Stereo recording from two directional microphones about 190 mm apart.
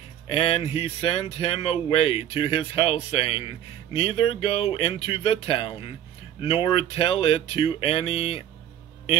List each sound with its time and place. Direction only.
0.3 s speech: 30° left (ahead or behind)